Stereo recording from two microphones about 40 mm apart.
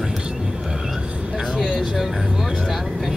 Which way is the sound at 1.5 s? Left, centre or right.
Centre.